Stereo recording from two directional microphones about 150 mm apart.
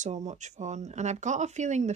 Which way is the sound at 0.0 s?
50° right (ahead or behind).